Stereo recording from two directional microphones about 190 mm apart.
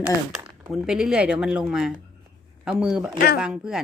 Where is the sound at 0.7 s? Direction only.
5° right (ahead or behind).